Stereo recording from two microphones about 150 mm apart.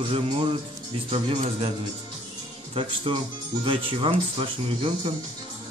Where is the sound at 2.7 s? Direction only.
35° right (ahead or behind).